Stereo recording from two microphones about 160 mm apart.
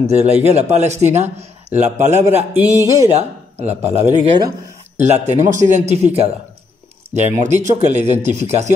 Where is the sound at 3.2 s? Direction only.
45° right (ahead or behind).